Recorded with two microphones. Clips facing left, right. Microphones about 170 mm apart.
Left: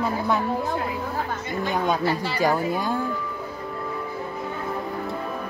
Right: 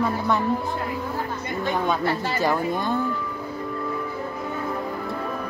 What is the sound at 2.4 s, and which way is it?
Speech, 10° left (ahead or behind).